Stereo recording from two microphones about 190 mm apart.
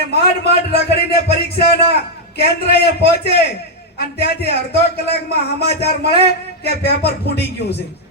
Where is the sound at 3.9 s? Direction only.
60° left (ahead or behind).